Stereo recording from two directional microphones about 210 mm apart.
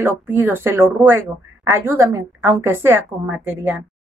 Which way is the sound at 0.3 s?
10° right (ahead or behind).